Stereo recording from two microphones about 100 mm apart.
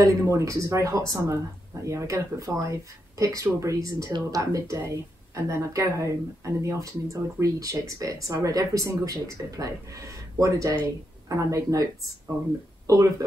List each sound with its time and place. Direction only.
0.0 s speech: 30° right (ahead or behind)